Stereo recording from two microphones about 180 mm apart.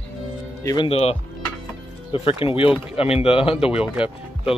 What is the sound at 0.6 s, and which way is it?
Speech, 20° left (ahead or behind).